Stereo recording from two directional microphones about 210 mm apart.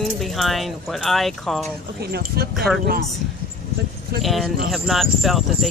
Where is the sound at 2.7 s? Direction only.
Centre (ahead or behind).